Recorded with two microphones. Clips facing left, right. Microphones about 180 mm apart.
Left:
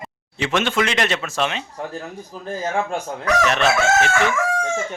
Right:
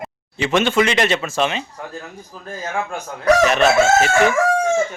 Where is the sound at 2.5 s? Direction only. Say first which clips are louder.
Left 2 dB; 30° left (ahead or behind).